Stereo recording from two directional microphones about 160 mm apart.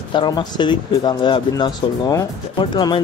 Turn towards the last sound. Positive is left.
turn(degrees=30)  # may be behind; listen again after turning